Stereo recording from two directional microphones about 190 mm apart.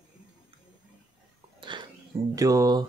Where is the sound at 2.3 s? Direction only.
20° right (ahead or behind).